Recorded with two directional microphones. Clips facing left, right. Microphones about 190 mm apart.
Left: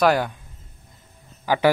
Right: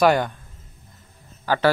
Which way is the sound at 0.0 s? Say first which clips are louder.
Right 1 dB; 5° left (ahead or behind).